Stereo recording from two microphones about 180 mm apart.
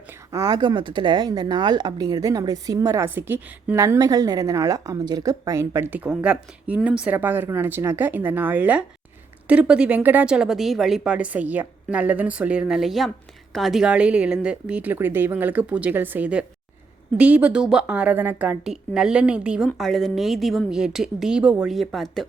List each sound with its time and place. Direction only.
0.3 s speech: 20° right (ahead or behind); by 22.3 s centre (ahead or behind)